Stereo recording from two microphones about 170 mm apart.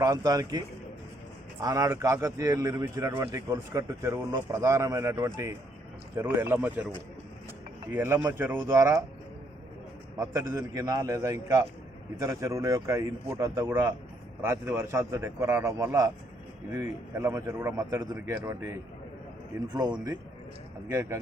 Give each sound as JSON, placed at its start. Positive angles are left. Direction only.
{"t": 0.0, "sound": "a man's voice", "side_deg": -20}
{"t": 1.6, "sound": "a man's voice", "side_deg": -20}
{"t": 7.9, "sound": "speech", "side_deg": -15}
{"t": 10.2, "sound": "a man's voice", "side_deg": -15}